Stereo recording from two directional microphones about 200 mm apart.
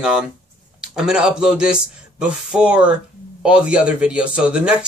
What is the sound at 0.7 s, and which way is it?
A man's voice, 5° right (ahead or behind).